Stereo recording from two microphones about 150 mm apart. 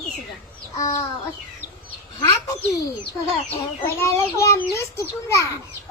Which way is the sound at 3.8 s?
15° left (ahead or behind).